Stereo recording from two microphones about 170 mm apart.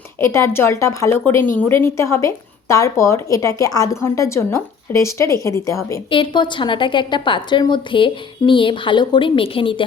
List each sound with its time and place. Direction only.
0.2 s a woman's voice: 15° left (ahead or behind)
6.1 s a woman's voice: 30° left (ahead or behind)